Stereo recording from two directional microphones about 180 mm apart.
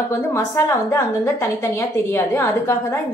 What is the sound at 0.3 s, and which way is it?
A woman's voice, 15° left (ahead or behind).